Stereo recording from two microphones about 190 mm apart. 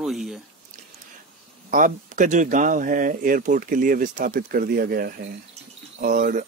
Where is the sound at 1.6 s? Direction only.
45° right (ahead or behind).